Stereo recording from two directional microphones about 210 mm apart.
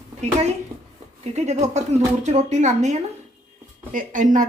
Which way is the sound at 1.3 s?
30° right (ahead or behind).